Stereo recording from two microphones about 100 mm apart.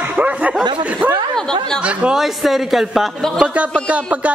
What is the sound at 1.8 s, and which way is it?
Speech, 10° right (ahead or behind).